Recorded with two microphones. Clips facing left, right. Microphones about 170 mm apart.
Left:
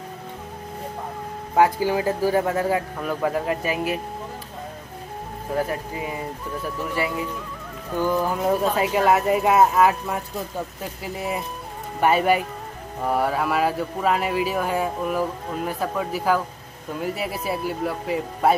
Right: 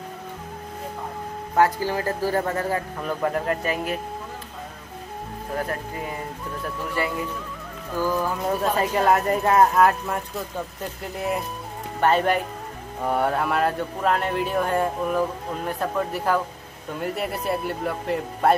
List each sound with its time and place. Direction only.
1.5 s a man's voice: 15° left (ahead or behind)
5.7 s a man's voice: 10° left (ahead or behind)
7.9 s speech: 20° left (ahead or behind)
8.5 s a man's voice: 10° left (ahead or behind)